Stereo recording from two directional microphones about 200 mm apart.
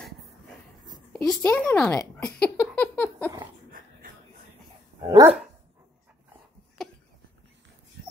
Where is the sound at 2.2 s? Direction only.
5° left (ahead or behind).